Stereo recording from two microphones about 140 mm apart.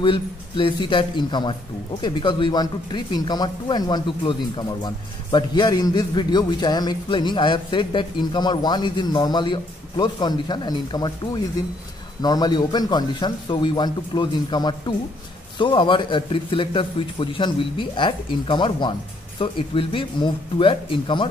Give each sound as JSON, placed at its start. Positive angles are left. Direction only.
{"t": 0.0, "sound": "a man's voice", "side_deg": 40}